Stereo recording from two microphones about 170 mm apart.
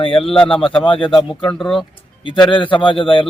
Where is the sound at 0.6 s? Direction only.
30° left (ahead or behind).